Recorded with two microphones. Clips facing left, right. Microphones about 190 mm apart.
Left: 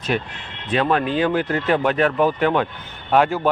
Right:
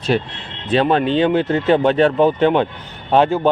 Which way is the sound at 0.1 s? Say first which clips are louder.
Right 4 dB; 30° right (ahead or behind).